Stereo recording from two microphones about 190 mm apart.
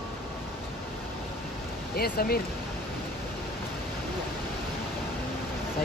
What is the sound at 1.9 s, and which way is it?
Speech, 50° left (ahead or behind).